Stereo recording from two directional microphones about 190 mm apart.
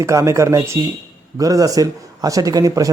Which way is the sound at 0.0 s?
15° right (ahead or behind).